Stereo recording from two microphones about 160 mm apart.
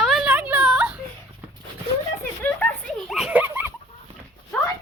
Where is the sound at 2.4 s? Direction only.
10° left (ahead or behind); by 3.7 s 10° right (ahead or behind).